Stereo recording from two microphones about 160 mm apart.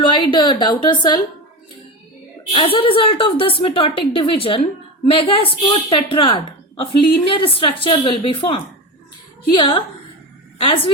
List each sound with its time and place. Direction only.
0.0 s speech: 30° left (ahead or behind)
2.5 s a woman's voice: 35° left (ahead or behind)